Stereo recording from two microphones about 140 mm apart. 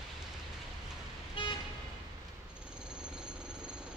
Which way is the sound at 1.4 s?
40° left (ahead or behind).